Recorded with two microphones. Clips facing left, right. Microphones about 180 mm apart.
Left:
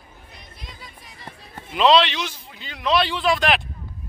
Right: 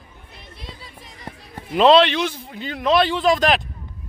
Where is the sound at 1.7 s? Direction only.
50° right (ahead or behind).